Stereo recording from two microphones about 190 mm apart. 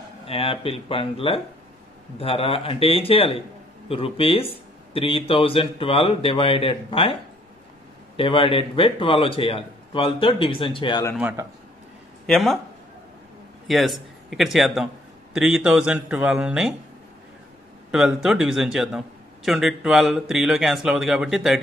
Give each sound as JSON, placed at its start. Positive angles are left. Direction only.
{"t": 0.3, "sound": "speech", "side_deg": 30}
{"t": 8.2, "sound": "speech", "side_deg": 30}
{"t": 12.3, "sound": "a man's voice", "side_deg": 0}
{"t": 13.7, "sound": "a man's voice", "side_deg": 0}
{"t": 17.9, "sound": "a man's voice", "side_deg": 0}